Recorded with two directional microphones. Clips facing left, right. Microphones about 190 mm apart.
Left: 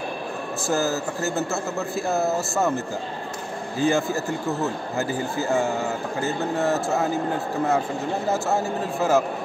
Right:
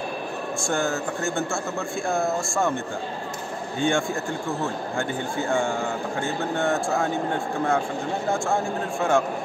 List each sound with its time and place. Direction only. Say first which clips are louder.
0.6 s speech: left 2 dB; 5° left (ahead or behind)